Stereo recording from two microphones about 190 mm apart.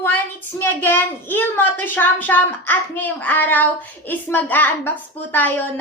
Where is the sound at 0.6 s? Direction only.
10° left (ahead or behind).